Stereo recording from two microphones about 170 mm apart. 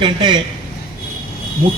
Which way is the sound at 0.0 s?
25° right (ahead or behind).